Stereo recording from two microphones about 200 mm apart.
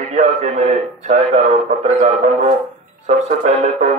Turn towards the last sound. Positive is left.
turn(degrees=-35)  # may be behind; listen again after turning